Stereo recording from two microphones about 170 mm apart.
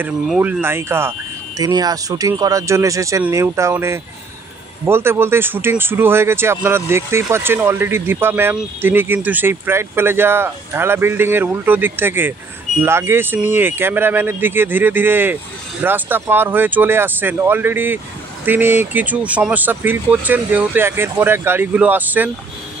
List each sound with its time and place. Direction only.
0.3 s speech: 10° right (ahead or behind)